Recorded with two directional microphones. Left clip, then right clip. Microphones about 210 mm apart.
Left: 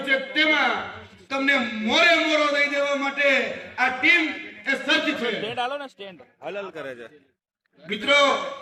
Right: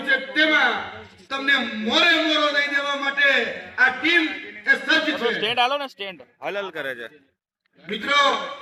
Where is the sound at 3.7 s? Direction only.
50° left (ahead or behind).